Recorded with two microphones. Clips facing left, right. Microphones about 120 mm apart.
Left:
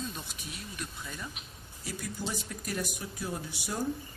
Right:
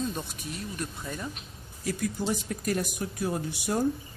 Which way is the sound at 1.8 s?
50° right (ahead or behind).